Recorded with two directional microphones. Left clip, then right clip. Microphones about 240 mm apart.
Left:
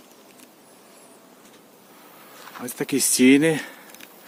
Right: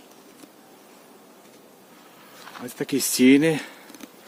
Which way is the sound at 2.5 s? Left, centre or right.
Centre.